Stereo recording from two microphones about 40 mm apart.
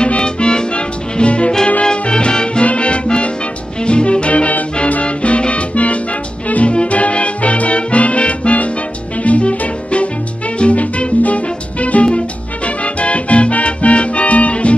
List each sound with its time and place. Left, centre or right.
0.0 s music: left